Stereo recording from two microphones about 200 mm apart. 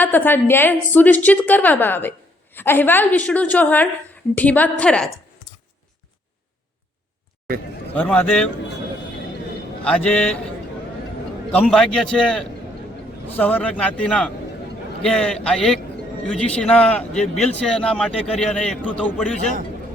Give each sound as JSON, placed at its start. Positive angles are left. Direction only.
{"t": 0.0, "sound": "a woman's voice", "side_deg": 10}
{"t": 7.9, "sound": "a woman's voice", "side_deg": 5}
{"t": 9.8, "sound": "a man's voice", "side_deg": 5}
{"t": 11.5, "sound": "a man's voice", "side_deg": 5}
{"t": 19.4, "sound": "a man's voice", "side_deg": -40}